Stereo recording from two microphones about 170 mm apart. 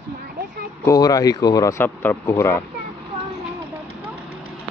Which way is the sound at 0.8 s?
20° left (ahead or behind).